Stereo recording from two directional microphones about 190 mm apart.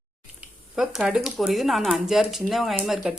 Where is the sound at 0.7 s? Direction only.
5° right (ahead or behind).